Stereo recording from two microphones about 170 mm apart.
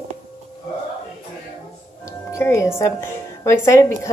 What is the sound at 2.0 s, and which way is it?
Music, 15° left (ahead or behind).